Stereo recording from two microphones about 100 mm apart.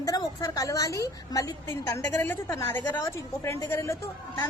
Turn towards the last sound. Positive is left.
turn(degrees=30)  # may be behind; listen again after turning